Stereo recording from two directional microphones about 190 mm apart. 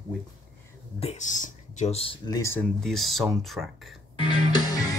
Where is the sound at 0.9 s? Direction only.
35° left (ahead or behind).